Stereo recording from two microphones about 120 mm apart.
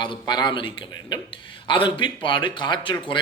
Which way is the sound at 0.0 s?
35° left (ahead or behind).